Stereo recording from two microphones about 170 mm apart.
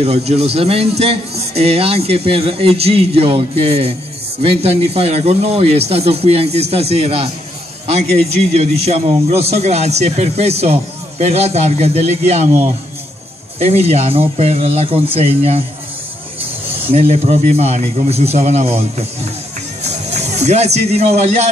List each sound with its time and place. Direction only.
0.0 s a man's voice: 40° right (ahead or behind)
16.9 s a man's voice: 35° right (ahead or behind)